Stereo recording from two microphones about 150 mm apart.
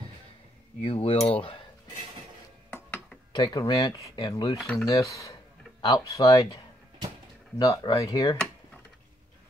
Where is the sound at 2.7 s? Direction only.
5° left (ahead or behind).